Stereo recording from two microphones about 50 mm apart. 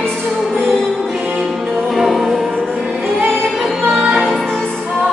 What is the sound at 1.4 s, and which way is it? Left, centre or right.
Music, centre.